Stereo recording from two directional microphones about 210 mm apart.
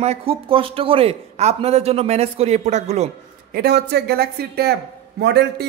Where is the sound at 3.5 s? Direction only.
50° right (ahead or behind).